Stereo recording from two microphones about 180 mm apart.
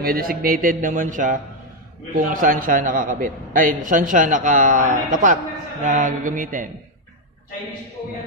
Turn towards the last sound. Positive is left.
turn(degrees=-45)  # may be behind; listen again after turning